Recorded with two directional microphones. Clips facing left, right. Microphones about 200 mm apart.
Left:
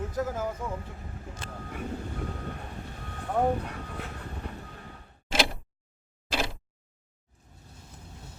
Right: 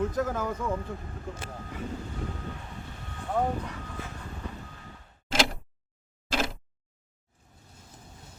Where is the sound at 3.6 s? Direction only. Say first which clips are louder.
Left 1 dB; 60° left (ahead or behind).